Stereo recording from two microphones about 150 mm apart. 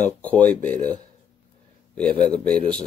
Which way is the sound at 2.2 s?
5° left (ahead or behind).